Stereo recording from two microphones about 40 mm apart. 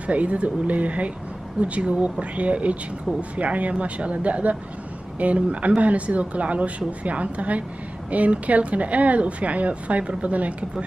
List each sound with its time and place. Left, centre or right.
0.0 s speech: right